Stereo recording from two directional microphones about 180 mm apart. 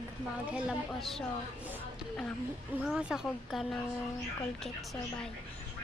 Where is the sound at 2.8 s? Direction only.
5° right (ahead or behind).